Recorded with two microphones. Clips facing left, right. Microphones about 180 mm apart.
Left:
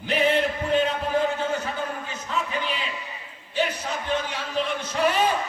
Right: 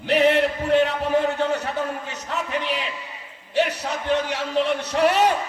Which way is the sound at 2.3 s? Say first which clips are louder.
Right 2 dB; 75° right (ahead or behind).